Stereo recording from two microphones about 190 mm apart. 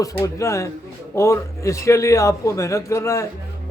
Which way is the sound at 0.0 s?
15° left (ahead or behind).